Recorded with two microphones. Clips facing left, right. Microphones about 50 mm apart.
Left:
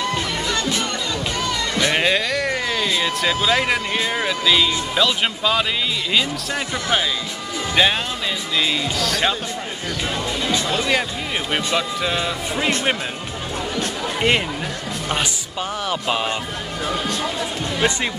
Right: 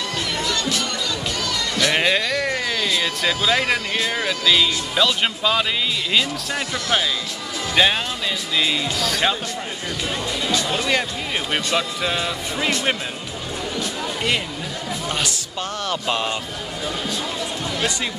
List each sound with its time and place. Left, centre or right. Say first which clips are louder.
0.0 s music: left 2 dB; left
1.9 s speech: even; centre
11.5 s speech: left 1 dB; centre
15.9 s speech: left 1 dB; centre